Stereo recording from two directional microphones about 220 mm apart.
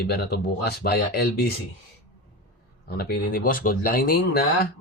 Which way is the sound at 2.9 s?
45° left (ahead or behind).